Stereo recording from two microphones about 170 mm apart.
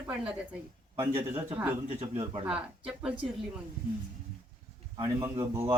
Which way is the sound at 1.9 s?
40° right (ahead or behind).